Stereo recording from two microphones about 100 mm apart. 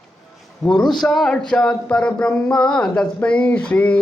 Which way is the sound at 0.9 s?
5° left (ahead or behind).